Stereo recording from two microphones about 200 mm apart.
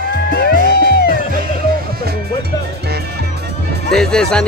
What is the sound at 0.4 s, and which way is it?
Music, 55° left (ahead or behind).